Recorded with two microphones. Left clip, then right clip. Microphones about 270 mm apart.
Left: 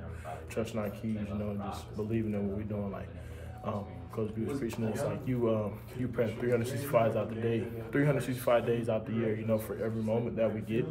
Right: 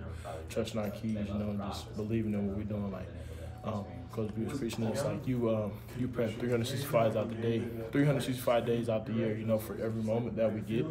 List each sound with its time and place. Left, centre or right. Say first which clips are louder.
0.6 s a man's voice: even; centre
4.2 s a man's voice: left 2 dB; centre